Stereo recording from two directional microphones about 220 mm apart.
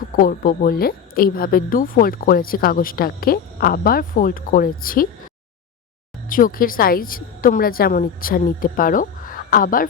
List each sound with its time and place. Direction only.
0.2 s a woman's voice: 40° left (ahead or behind)
6.2 s a woman's voice: 40° left (ahead or behind)